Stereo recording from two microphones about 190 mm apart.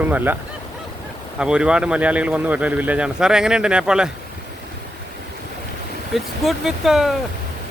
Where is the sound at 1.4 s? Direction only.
5° right (ahead or behind).